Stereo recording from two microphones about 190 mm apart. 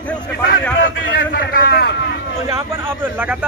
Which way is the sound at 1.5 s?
55° left (ahead or behind).